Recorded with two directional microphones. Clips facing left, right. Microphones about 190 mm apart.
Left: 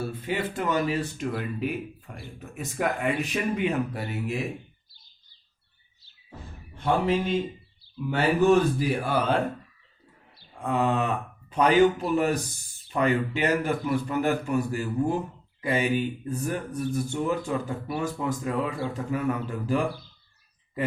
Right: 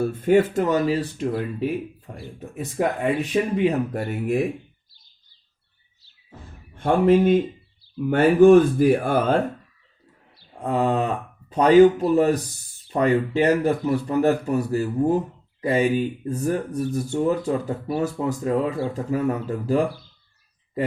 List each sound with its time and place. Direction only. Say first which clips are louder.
0.0 s speech: right 11 dB; 50° right (ahead or behind); by 3.8 s 30° right (ahead or behind)
3.9 s speech: right 7 dB; 50° right (ahead or behind)
6.7 s speech: right 7 dB; 50° right (ahead or behind)
10.6 s speech: right 3 dB; 30° right (ahead or behind)